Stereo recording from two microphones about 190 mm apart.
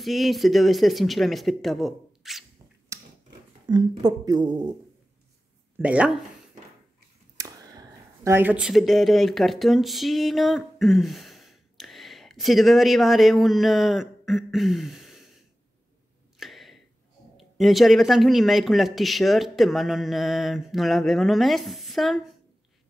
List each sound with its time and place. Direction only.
0.0 s speech: centre (ahead or behind)
2.9 s a sound: 15° right (ahead or behind)
3.6 s speech: 20° right (ahead or behind)
5.8 s speech: 5° right (ahead or behind)
7.3 s speech: 15° right (ahead or behind); by 15.2 s centre (ahead or behind)
16.3 s a sound: centre (ahead or behind)
17.4 s speech: centre (ahead or behind)